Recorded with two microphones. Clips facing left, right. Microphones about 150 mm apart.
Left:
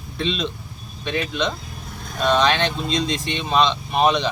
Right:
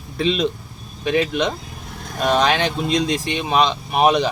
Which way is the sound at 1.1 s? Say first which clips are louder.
Right 5 dB; 65° right (ahead or behind).